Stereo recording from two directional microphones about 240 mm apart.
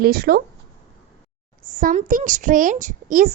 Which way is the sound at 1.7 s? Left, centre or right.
Right.